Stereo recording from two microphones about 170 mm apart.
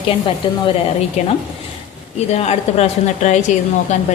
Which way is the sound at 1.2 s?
40° left (ahead or behind).